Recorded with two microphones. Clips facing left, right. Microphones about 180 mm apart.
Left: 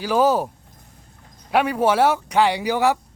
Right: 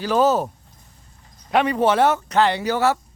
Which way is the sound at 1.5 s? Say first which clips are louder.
Even; 5° left (ahead or behind).